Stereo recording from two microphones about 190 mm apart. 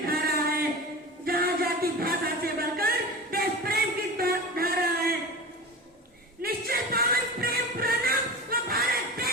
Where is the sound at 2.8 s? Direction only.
50° right (ahead or behind).